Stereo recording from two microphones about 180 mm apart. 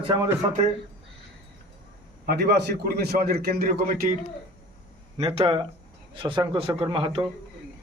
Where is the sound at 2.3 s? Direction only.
65° right (ahead or behind).